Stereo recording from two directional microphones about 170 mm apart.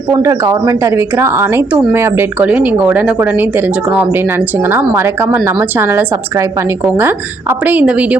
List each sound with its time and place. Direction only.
0.1 s speech: 20° right (ahead or behind)